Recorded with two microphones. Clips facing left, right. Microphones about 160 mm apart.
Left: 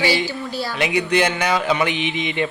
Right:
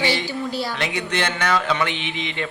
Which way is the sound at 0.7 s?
10° left (ahead or behind).